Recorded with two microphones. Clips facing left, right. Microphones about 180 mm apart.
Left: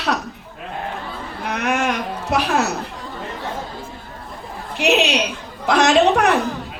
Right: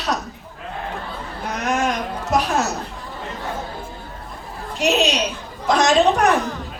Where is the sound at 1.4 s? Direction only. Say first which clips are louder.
Left 1 dB; 65° left (ahead or behind).